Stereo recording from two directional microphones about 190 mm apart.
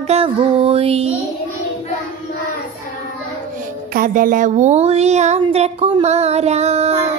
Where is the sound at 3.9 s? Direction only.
45° right (ahead or behind).